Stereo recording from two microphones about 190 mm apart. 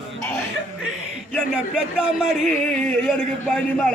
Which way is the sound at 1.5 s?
5° right (ahead or behind).